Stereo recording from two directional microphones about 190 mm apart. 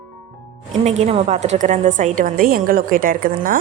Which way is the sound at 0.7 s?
35° right (ahead or behind).